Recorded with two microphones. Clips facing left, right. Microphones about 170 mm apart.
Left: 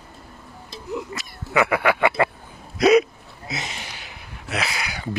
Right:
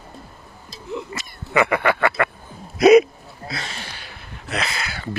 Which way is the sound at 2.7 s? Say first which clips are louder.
Right 4 dB; 10° right (ahead or behind).